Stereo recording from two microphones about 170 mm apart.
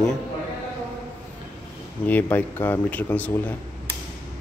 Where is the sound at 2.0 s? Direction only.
10° left (ahead or behind).